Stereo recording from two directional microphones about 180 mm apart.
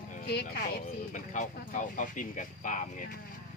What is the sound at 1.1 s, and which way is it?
Speech, 45° left (ahead or behind).